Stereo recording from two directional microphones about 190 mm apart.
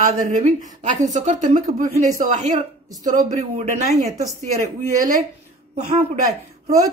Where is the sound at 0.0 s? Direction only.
40° right (ahead or behind).